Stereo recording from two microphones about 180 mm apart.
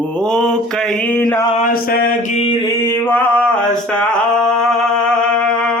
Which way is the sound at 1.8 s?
55° left (ahead or behind).